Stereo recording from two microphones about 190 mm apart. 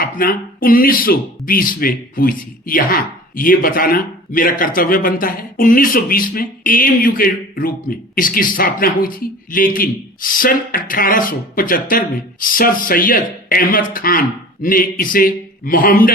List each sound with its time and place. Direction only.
0.0 s speech: 50° left (ahead or behind)